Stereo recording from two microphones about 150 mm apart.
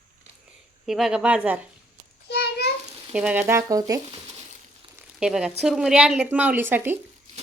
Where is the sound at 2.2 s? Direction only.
90° left.